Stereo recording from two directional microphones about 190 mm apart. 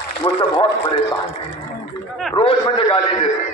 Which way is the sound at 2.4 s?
30° left (ahead or behind).